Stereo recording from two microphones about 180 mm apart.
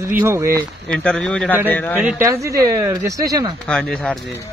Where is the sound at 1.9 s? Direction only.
10° right (ahead or behind).